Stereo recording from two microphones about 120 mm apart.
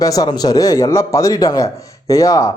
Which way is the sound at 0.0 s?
30° left (ahead or behind).